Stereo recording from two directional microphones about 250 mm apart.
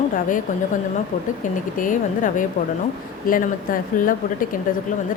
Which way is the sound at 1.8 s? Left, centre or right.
Left.